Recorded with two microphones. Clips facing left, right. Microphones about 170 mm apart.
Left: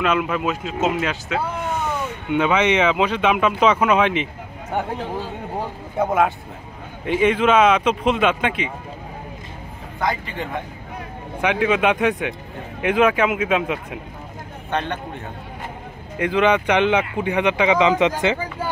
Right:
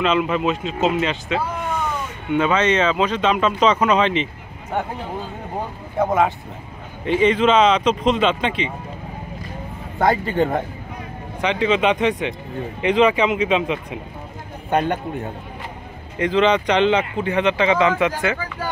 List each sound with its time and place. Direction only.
0.0 s speech: 5° left (ahead or behind)
5.9 s speech: centre (ahead or behind)
9.9 s speech: 50° right (ahead or behind)
11.4 s speech: 10° left (ahead or behind)
16.2 s speech: 10° left (ahead or behind)